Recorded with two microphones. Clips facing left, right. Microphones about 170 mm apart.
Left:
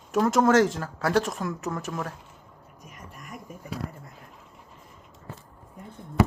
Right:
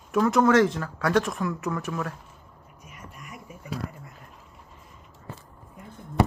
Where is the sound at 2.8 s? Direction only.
45° left (ahead or behind).